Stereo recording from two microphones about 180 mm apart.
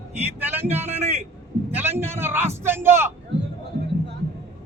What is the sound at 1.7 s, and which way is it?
A man's voice, 10° right (ahead or behind).